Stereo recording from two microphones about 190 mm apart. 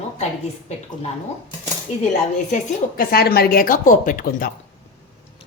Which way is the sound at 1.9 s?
35° left (ahead or behind).